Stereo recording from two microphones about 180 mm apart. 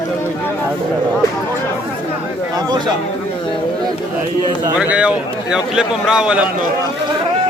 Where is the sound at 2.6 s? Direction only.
25° right (ahead or behind).